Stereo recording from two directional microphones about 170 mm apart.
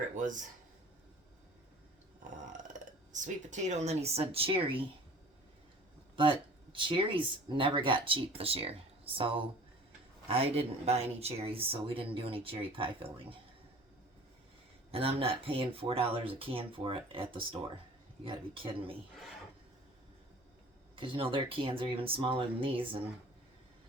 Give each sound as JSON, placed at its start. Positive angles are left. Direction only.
{"t": 3.1, "sound": "speech", "side_deg": -45}
{"t": 6.1, "sound": "speech", "side_deg": -30}
{"t": 14.9, "sound": "speech", "side_deg": -35}
{"t": 20.9, "sound": "speech", "side_deg": -30}